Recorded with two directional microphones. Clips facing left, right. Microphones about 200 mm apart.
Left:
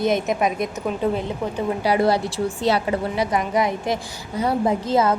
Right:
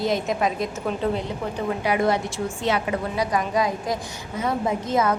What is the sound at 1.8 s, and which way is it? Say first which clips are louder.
A woman's voice: left 3 dB; 35° left (ahead or behind).